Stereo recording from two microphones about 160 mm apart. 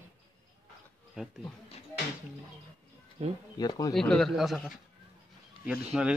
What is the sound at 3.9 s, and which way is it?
Speech, centre (ahead or behind).